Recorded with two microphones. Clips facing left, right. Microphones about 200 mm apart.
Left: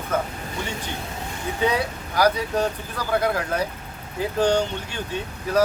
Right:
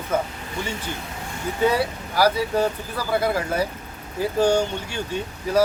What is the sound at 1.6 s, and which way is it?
Speech, 5° right (ahead or behind).